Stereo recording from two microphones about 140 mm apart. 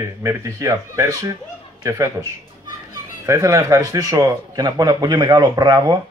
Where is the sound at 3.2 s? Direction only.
20° right (ahead or behind).